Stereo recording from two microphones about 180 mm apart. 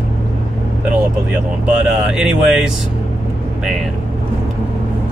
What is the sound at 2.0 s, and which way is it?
Speech, 5° right (ahead or behind).